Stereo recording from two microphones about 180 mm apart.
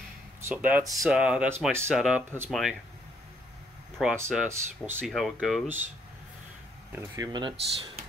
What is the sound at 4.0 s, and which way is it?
Speech, centre (ahead or behind).